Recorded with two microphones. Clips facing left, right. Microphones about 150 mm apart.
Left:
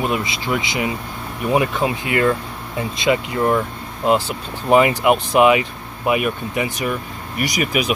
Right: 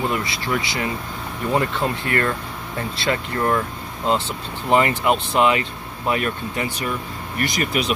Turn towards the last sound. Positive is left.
turn(degrees=10)  # may be behind; listen again after turning